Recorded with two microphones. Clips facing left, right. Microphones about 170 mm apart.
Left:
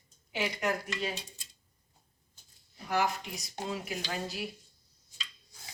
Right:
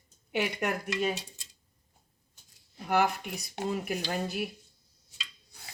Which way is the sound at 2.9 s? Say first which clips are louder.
Right 4 dB; 60° right (ahead or behind).